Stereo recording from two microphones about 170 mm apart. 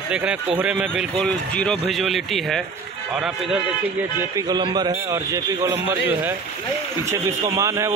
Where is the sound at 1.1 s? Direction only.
5° left (ahead or behind).